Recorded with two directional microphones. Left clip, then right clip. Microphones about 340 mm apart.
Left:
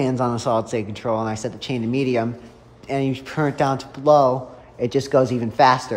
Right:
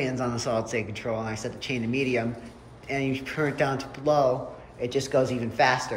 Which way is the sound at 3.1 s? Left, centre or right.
Centre.